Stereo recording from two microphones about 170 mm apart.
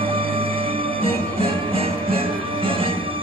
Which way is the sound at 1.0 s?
35° right (ahead or behind).